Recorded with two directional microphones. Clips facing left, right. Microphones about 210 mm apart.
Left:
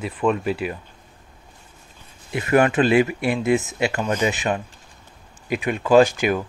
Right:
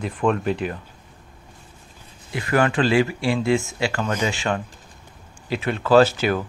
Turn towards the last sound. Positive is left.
turn(degrees=15)  # may be behind; listen again after turning